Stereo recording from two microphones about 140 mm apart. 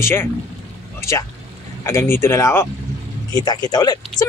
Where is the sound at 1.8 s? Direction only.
20° left (ahead or behind).